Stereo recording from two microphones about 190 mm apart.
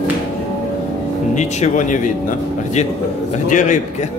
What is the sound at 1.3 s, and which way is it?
Speech, 35° left (ahead or behind).